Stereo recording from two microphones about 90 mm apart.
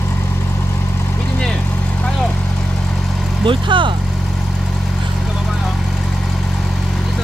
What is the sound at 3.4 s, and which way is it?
Vehicle, 65° right (ahead or behind).